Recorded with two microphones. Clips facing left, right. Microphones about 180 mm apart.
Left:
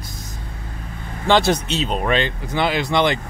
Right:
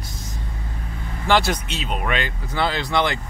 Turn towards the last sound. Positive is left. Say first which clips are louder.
# left 3 dB
turn(degrees=20)  # may be behind; listen again after turning